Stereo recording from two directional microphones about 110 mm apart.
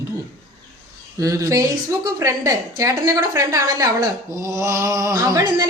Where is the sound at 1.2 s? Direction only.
30° right (ahead or behind).